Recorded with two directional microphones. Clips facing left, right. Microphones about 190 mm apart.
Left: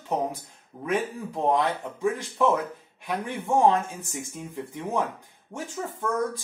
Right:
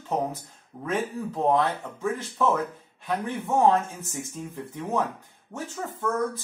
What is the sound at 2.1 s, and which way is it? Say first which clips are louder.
Speech: right 1 dB; 15° left (ahead or behind).